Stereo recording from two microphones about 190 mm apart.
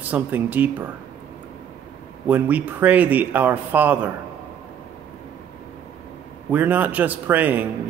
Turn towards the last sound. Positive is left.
turn(degrees=-10)  # may be behind; listen again after turning